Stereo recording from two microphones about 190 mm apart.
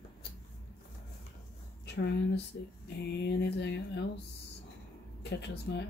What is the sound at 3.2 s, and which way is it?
Speech, 60° left (ahead or behind).